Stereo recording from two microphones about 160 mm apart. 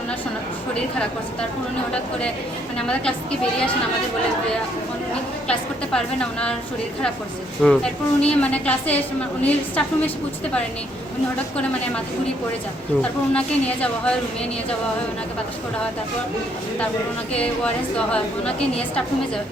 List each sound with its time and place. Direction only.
2.7 s a woman's voice: 5° left (ahead or behind)
5.5 s a woman's voice: 5° left (ahead or behind)
7.6 s a woman's voice: 5° left (ahead or behind)
13.0 s a woman's voice: 10° left (ahead or behind)
17.3 s a woman's voice: 5° left (ahead or behind)